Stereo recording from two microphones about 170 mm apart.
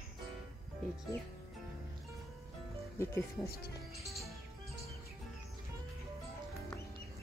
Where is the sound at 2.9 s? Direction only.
15° left (ahead or behind).